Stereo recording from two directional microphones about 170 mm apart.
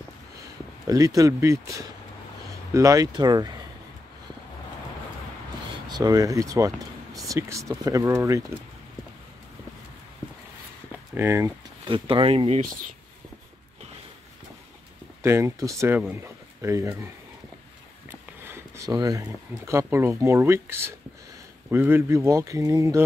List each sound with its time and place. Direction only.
0.8 s speech: 20° right (ahead or behind)
2.7 s speech: 20° right (ahead or behind)
5.9 s speech: 25° right (ahead or behind)
11.1 s speech: 15° right (ahead or behind)
11.9 s speech: 30° right (ahead or behind)
15.2 s speech: 15° right (ahead or behind)
18.1 s speech: 15° right (ahead or behind)